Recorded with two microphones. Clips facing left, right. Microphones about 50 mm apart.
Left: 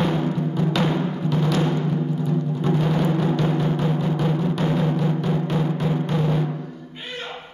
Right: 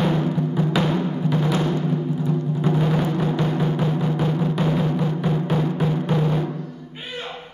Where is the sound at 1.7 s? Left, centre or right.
Centre.